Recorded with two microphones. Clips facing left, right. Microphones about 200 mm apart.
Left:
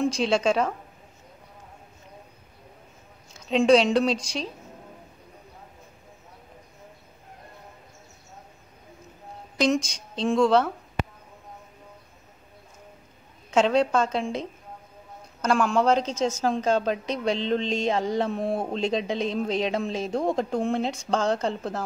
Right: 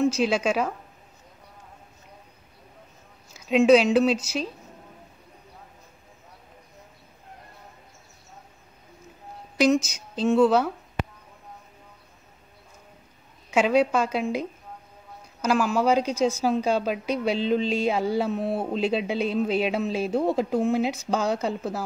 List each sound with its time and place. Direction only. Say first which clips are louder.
0.0 s a woman's voice: right 1 dB; 5° right (ahead or behind)
3.3 s a woman's voice: right 2 dB; 5° right (ahead or behind)
9.6 s a woman's voice: right 3 dB; 5° right (ahead or behind)
13.5 s a woman's voice: even; 5° right (ahead or behind)
15.4 s a woman's voice: even; 5° right (ahead or behind)